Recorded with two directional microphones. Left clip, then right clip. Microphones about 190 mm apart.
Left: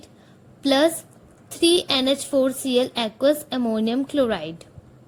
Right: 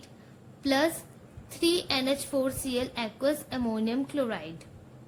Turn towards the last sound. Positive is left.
turn(degrees=40)  # may be behind; listen again after turning